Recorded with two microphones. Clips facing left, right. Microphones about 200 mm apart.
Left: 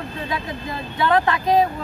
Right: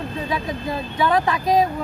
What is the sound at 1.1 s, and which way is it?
Speech, 10° right (ahead or behind).